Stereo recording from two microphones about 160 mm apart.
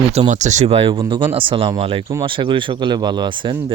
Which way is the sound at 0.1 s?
45° right (ahead or behind).